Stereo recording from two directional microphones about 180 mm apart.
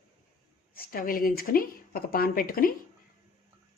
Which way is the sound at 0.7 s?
55° left (ahead or behind).